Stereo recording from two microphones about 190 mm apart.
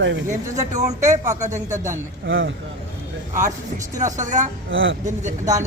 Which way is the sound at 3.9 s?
40° right (ahead or behind).